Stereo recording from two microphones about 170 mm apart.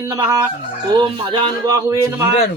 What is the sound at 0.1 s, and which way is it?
Speech, 20° right (ahead or behind).